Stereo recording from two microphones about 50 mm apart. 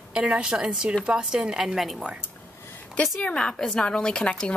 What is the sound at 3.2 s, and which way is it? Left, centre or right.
A woman's voice, left.